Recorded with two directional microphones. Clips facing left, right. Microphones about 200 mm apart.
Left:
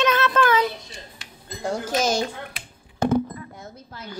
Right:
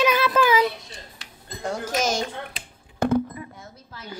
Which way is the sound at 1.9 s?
30° left (ahead or behind).